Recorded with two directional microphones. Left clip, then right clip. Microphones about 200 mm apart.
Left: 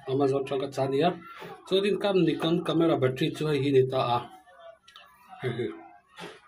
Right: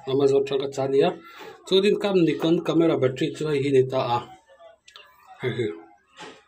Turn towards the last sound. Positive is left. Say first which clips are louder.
# right 5 dB
turn(degrees=-20)  # may be behind; listen again after turning